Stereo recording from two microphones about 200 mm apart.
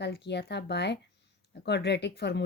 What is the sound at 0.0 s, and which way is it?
Speech, 55° left (ahead or behind).